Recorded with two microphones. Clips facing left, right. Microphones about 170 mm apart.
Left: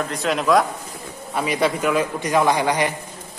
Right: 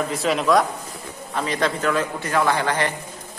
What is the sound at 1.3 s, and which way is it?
A man's voice, 10° left (ahead or behind).